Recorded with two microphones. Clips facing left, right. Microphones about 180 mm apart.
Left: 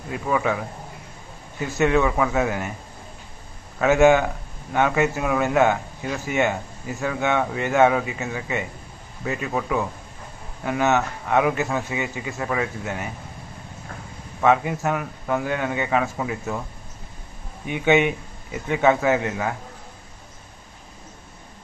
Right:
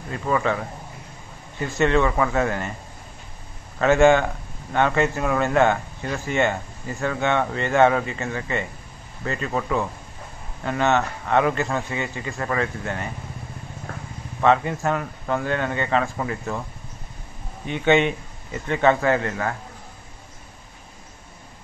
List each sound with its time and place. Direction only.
0.1 s a man's voice: 10° left (ahead or behind)
3.8 s a man's voice: 5° left (ahead or behind)
14.4 s a man's voice: 10° left (ahead or behind)
17.6 s a man's voice: 10° left (ahead or behind)